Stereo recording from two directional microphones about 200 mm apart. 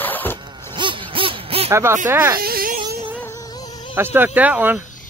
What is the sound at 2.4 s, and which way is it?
Insect, 50° right (ahead or behind).